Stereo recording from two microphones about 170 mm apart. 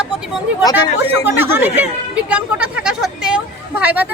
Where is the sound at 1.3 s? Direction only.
15° right (ahead or behind).